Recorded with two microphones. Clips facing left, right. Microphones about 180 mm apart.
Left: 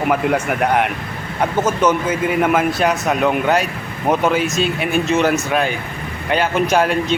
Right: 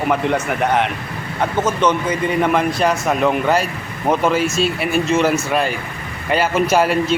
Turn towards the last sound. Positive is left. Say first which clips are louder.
# right 1 dB
turn(degrees=-5)  # may be behind; listen again after turning